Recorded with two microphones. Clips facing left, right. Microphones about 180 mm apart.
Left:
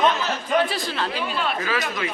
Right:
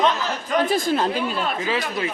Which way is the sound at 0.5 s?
45° right (ahead or behind).